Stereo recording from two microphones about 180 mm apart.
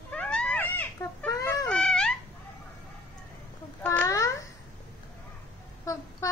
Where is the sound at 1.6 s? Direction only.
5° left (ahead or behind).